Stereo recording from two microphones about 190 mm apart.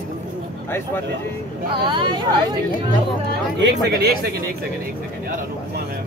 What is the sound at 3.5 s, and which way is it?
Speech, 65° right (ahead or behind).